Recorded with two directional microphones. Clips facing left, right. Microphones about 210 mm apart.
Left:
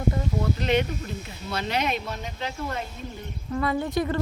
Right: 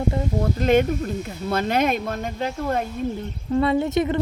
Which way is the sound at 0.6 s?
45° right (ahead or behind).